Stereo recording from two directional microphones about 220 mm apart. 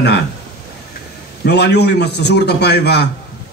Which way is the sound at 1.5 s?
50° left (ahead or behind).